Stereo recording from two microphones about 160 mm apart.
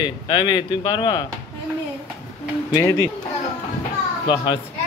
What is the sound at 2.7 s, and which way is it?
Speech, 20° left (ahead or behind).